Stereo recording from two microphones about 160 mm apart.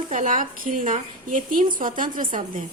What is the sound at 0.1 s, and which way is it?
A woman's voice, 55° right (ahead or behind).